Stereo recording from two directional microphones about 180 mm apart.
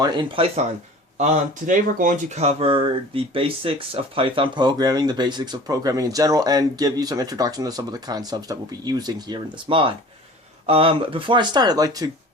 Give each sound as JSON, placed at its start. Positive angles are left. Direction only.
{"t": 0.0, "sound": "speech", "side_deg": -25}
{"t": 1.2, "sound": "speech", "side_deg": -45}